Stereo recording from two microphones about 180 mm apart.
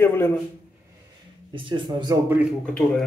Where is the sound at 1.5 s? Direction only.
25° right (ahead or behind).